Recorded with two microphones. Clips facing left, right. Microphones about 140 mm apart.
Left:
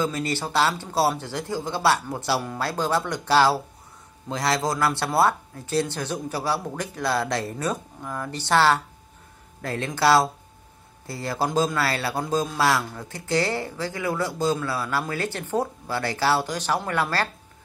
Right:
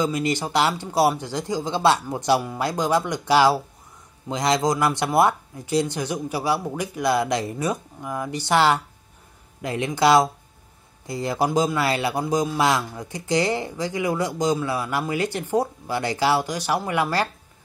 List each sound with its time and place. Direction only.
0.0 s speech: 15° right (ahead or behind)